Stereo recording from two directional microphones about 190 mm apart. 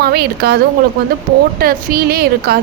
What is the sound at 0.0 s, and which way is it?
A woman's voice, 55° right (ahead or behind).